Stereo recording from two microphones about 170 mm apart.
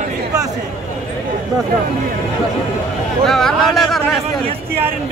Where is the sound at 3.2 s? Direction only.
Centre (ahead or behind).